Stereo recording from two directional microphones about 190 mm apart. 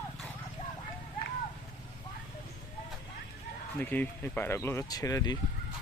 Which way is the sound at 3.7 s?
10° left (ahead or behind).